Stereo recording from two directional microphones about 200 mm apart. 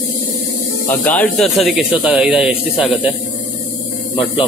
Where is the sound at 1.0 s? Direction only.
5° left (ahead or behind).